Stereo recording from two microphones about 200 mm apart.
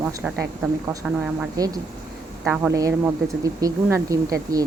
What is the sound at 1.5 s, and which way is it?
Speech, 20° right (ahead or behind).